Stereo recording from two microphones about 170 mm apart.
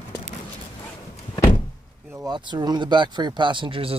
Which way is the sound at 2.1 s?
25° right (ahead or behind).